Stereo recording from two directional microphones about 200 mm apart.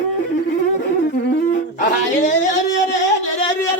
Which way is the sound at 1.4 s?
40° left (ahead or behind).